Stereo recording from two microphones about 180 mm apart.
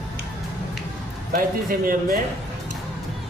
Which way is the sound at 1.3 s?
50° right (ahead or behind).